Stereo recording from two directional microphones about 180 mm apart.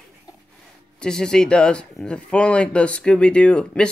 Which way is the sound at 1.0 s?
5° left (ahead or behind).